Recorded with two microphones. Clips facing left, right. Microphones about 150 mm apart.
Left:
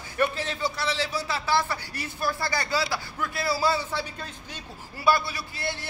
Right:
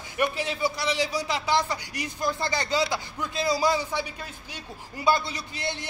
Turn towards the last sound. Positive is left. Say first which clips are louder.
# even
turn(degrees=-20)  # may be behind; listen again after turning